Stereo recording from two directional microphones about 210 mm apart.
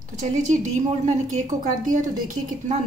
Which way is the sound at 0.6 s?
35° right (ahead or behind).